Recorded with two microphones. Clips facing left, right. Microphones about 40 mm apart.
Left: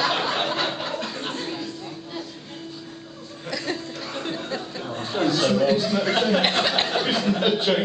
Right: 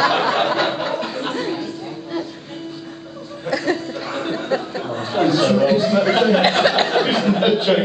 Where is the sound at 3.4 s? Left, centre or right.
Centre.